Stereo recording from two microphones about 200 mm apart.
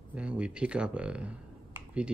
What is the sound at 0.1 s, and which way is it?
Speech, 5° right (ahead or behind).